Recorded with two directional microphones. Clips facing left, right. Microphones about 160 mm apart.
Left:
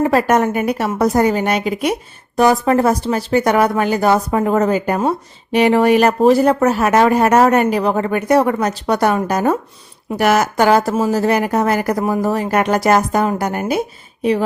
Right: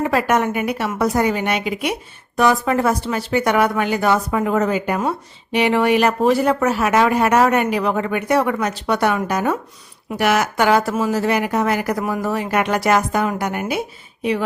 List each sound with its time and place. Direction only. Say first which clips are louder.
0.0 s a woman's voice: left 4 dB; 40° left (ahead or behind)